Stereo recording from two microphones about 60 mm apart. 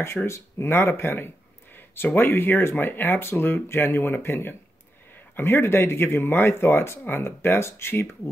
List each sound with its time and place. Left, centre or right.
0.0 s speech: left